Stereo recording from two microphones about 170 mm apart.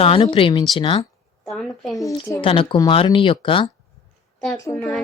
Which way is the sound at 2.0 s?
20° left (ahead or behind).